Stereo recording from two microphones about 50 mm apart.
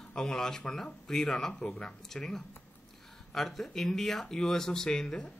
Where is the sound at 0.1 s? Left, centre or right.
Centre.